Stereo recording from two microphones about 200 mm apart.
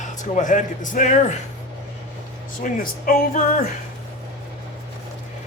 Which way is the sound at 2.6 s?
45° left (ahead or behind).